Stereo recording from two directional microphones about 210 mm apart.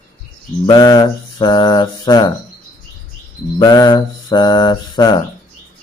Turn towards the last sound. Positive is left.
turn(degrees=20)  # may be behind; listen again after turning